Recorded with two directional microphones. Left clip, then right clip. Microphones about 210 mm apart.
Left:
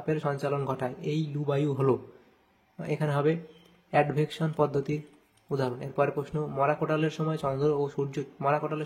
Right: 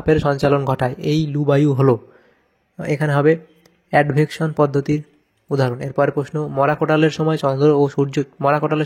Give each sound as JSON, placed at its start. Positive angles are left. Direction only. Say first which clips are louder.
{"t": 0.0, "sound": "speech", "louder": "right 13 dB", "side_deg": -40}